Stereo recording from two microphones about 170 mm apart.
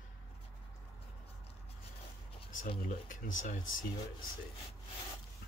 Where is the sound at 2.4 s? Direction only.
30° left (ahead or behind).